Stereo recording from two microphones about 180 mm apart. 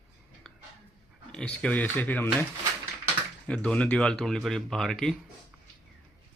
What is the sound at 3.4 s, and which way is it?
Speech, 5° left (ahead or behind).